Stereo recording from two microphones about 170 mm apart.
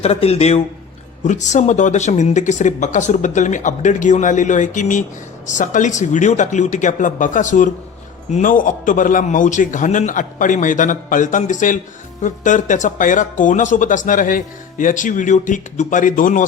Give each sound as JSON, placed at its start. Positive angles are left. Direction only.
{"t": 0.0, "sound": "a man's voice", "side_deg": 35}